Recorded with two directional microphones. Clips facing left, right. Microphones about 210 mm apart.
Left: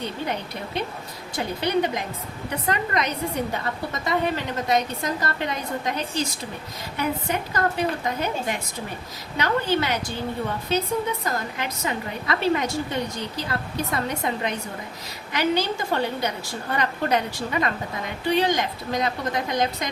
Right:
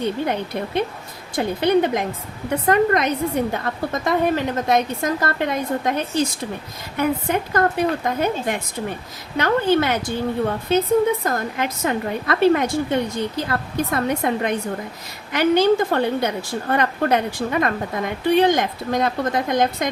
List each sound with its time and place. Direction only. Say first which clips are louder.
0.0 s a woman's voice: right 6 dB; 55° right (ahead or behind)